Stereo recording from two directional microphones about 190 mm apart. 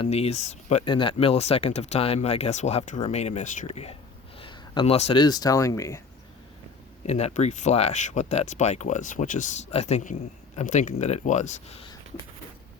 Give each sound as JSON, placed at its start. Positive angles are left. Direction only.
{"t": 0.0, "sound": "speech", "side_deg": 35}
{"t": 7.0, "sound": "speech", "side_deg": 35}